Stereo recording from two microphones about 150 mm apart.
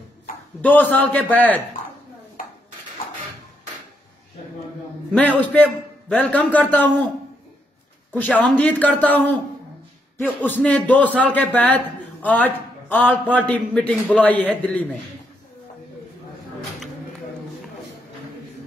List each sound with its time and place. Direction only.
0.6 s a man's voice: 10° left (ahead or behind)
5.1 s a man's voice: 10° left (ahead or behind)
8.1 s a man's voice: 10° left (ahead or behind)